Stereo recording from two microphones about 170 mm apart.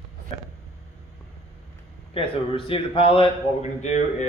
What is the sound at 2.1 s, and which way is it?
A man's voice, 30° left (ahead or behind).